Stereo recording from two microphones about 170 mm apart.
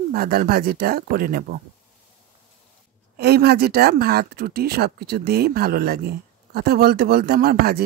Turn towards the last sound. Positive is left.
turn(degrees=-65)  # may be behind; listen again after turning